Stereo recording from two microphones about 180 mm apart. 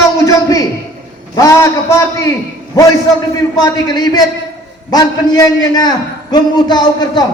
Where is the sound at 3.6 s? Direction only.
20° left (ahead or behind).